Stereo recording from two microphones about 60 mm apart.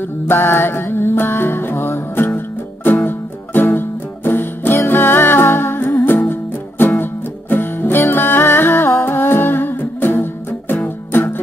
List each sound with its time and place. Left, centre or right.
0.3 s music: left